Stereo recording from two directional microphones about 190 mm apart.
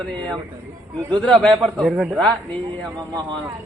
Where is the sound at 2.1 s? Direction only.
5° left (ahead or behind).